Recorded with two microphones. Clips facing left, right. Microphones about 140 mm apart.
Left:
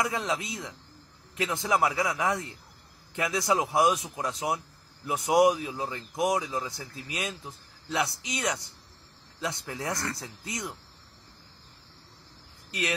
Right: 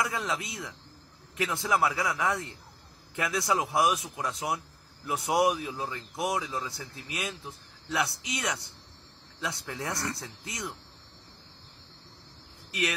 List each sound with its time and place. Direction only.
0.0 s speech: 20° left (ahead or behind)